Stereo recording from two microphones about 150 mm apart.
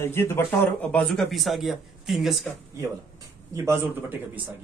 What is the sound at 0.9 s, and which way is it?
A man's voice, 5° left (ahead or behind).